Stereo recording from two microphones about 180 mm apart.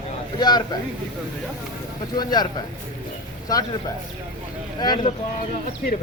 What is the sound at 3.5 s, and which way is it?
Speech, 20° left (ahead or behind).